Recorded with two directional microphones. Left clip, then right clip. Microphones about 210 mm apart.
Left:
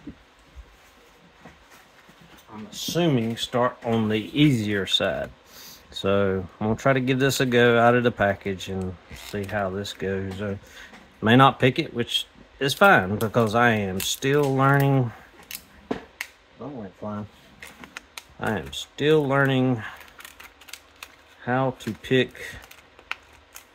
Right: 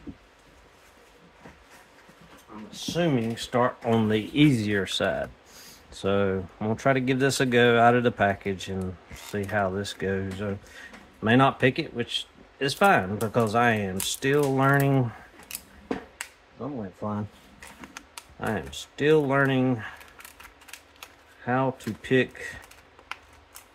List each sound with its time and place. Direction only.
2.9 s speech: 30° left (ahead or behind)
3.3 s speech: 5° left (ahead or behind)
11.1 s speech: 20° left (ahead or behind)
17.6 s a sound: centre (ahead or behind)
18.4 s speech: 15° left (ahead or behind)
21.5 s speech: 10° left (ahead or behind)